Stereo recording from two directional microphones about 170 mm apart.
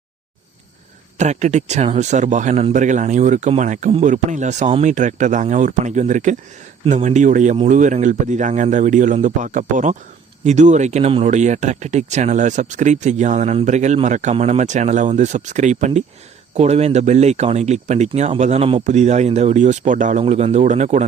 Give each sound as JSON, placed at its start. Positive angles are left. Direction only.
{"t": 1.2, "sound": "speech", "side_deg": -40}